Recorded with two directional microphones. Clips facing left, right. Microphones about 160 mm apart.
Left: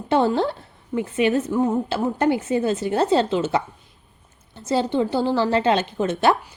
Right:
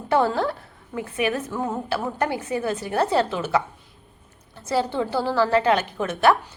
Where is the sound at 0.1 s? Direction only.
25° left (ahead or behind).